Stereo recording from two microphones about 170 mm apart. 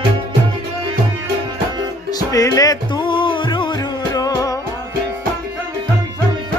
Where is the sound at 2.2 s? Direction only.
20° left (ahead or behind).